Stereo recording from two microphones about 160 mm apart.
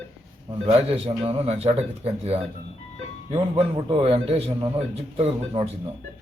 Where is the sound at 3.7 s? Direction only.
35° right (ahead or behind).